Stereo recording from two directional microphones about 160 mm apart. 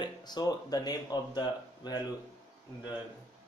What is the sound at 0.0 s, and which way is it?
Speech, 25° left (ahead or behind).